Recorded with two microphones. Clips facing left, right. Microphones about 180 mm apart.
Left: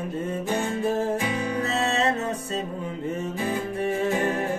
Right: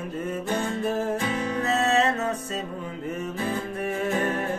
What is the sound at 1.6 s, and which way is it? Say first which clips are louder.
Music: right 4 dB; 30° left (ahead or behind).